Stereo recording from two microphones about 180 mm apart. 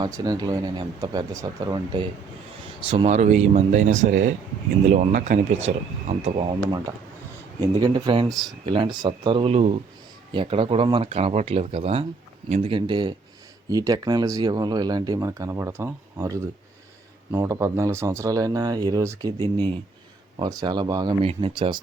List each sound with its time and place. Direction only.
0.0 s speech: 20° right (ahead or behind)
2.8 s speech: 30° right (ahead or behind)
19.4 s speech: 10° left (ahead or behind)
20.3 s speech: 20° right (ahead or behind)